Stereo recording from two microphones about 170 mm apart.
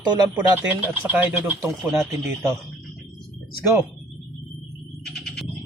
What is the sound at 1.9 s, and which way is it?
Speech, 5° right (ahead or behind).